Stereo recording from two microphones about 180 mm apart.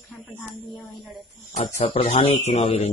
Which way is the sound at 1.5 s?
35° left (ahead or behind).